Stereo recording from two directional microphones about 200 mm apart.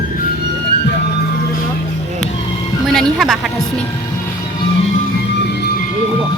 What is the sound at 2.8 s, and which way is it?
A woman's voice, centre (ahead or behind).